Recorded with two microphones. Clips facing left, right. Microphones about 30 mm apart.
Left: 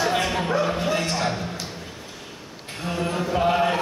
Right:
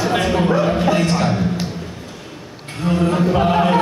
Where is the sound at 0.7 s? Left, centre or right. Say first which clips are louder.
Right 7 dB; right.